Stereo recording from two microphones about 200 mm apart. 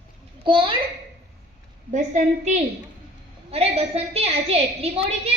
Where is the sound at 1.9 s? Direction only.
40° right (ahead or behind).